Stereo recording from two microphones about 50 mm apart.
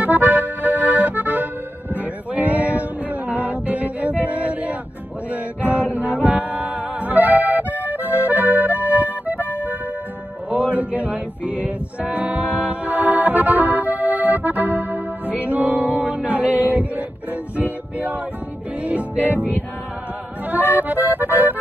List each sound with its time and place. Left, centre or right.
0.0 s accordion: right
5.9 s music: right
10.5 s music: right
20.4 s accordion: right